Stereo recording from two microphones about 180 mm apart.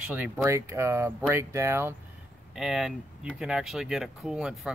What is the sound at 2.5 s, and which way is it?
Speech, 5° right (ahead or behind).